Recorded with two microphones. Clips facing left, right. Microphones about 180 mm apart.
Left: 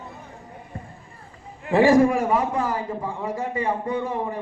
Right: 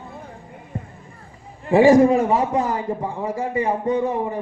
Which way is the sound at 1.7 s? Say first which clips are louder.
Right 4 dB; 15° right (ahead or behind).